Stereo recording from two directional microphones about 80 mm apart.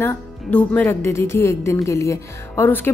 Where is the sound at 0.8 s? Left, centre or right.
Left.